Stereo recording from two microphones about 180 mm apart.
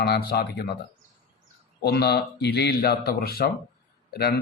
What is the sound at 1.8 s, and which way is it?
A man's voice, 65° left (ahead or behind).